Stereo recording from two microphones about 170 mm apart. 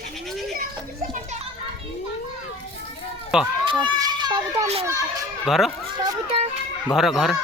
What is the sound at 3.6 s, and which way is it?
Children playing, 30° right (ahead or behind).